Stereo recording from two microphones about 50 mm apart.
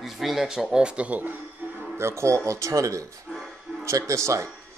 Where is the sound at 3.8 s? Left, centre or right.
Right.